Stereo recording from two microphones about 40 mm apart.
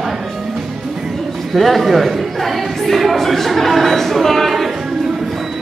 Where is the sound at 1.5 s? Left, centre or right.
Centre.